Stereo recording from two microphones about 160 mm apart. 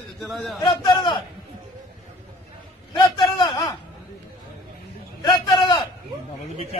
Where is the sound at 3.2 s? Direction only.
25° left (ahead or behind).